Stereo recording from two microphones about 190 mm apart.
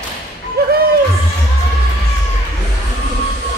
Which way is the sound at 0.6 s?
55° right (ahead or behind).